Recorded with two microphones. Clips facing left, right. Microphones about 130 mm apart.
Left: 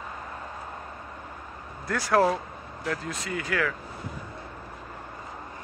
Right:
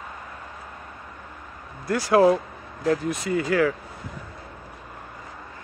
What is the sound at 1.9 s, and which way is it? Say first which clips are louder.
Speech: right 5 dB; 10° right (ahead or behind).